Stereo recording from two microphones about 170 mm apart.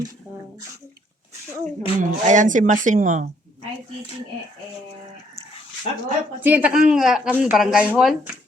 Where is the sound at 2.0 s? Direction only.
50° right (ahead or behind).